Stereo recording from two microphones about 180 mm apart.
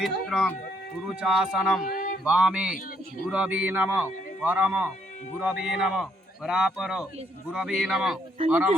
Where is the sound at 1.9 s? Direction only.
55° left (ahead or behind).